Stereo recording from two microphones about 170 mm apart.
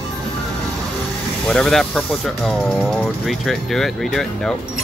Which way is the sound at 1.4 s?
Centre (ahead or behind).